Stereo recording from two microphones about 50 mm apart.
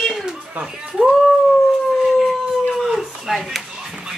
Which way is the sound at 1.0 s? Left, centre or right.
Centre.